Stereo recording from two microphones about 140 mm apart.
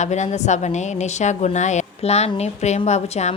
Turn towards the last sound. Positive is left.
turn(degrees=55)  # may be behind; listen again after turning